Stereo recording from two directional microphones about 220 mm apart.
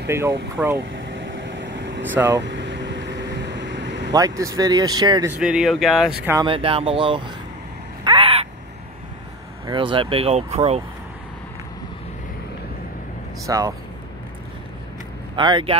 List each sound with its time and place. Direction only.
0.1 s speech: 10° right (ahead or behind)
0.9 s vehicle: 55° right (ahead or behind)
2.1 s speech: 10° right (ahead or behind)
2.4 s air conditioning: 55° right (ahead or behind)
4.1 s speech: 15° right (ahead or behind)
5.4 s speech: centre (ahead or behind)
6.4 s speech: 25° right (ahead or behind)
8.0 s crow: 25° right (ahead or behind)
9.7 s speech: 20° right (ahead or behind)
13.5 s speech: 15° right (ahead or behind)
15.3 s speech: 20° right (ahead or behind)